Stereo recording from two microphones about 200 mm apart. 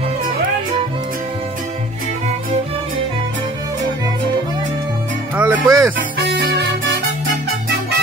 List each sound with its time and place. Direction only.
5.3 s music: 10° right (ahead or behind)
5.9 s music: 60° right (ahead or behind)